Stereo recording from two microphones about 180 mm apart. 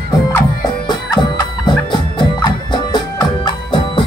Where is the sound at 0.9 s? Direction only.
25° left (ahead or behind).